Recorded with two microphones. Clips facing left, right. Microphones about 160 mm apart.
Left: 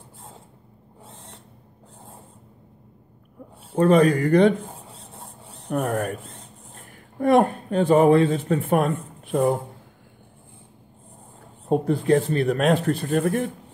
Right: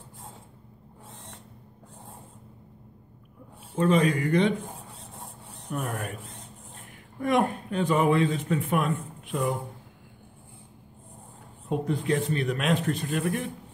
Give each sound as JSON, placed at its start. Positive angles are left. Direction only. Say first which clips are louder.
{"t": 3.7, "sound": "speech", "louder": "left 6 dB", "side_deg": 40}
{"t": 5.8, "sound": "speech", "louder": "left 9 dB", "side_deg": 45}
{"t": 11.7, "sound": "speech", "louder": "left 7 dB", "side_deg": 35}